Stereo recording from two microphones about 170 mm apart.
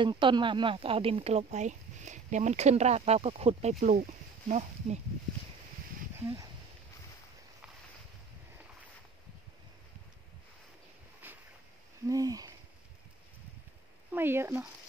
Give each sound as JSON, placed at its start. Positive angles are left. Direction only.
{"t": 0.0, "sound": "speech", "side_deg": -30}
{"t": 11.2, "sound": "a sound", "side_deg": -10}
{"t": 12.1, "sound": "hoot", "side_deg": -20}
{"t": 14.1, "sound": "speech", "side_deg": -15}